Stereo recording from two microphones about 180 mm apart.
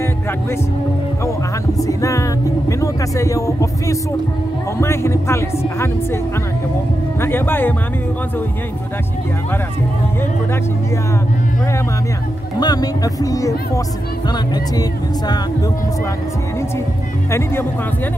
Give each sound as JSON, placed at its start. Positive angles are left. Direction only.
{"t": 1.8, "sound": "a man's voice", "side_deg": 20}
{"t": 7.2, "sound": "a man's voice", "side_deg": 10}
{"t": 12.5, "sound": "speech", "side_deg": 20}
{"t": 17.3, "sound": "a man's voice", "side_deg": 15}